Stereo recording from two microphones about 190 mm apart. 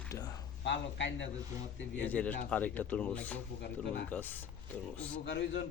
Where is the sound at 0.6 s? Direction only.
70° left (ahead or behind).